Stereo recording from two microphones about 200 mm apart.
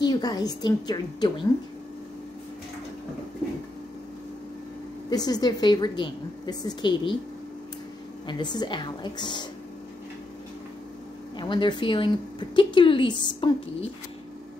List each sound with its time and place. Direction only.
0.0 s speech: 20° left (ahead or behind)
5.1 s speech: 20° left (ahead or behind)
8.3 s speech: 20° left (ahead or behind)
11.3 s speech: 25° left (ahead or behind)